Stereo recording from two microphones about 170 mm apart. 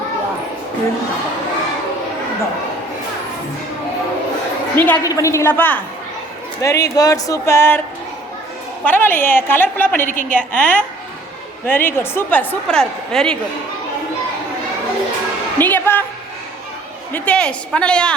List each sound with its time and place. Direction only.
4.8 s a woman's voice: 15° left (ahead or behind)
8.8 s a woman's voice: 10° left (ahead or behind)
15.5 s a sound: 10° left (ahead or behind)
17.1 s a woman's voice: 10° left (ahead or behind)